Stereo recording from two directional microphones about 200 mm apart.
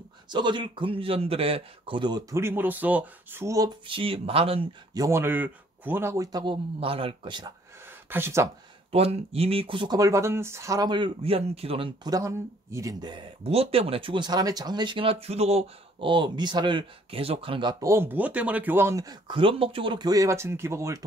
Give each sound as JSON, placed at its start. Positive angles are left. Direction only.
{"t": 0.3, "sound": "speech", "side_deg": -20}
{"t": 5.0, "sound": "speech", "side_deg": -10}
{"t": 8.1, "sound": "speech", "side_deg": -15}
{"t": 8.9, "sound": "speech", "side_deg": -30}